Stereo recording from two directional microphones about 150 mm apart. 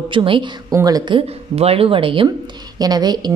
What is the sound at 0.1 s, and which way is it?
Speech, 35° right (ahead or behind).